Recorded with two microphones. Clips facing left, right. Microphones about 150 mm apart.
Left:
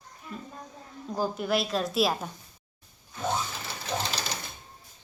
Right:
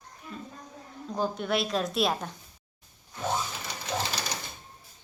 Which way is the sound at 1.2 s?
5° left (ahead or behind).